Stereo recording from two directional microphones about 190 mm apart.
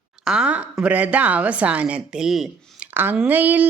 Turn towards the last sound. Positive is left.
turn(degrees=-10)  # may be behind; listen again after turning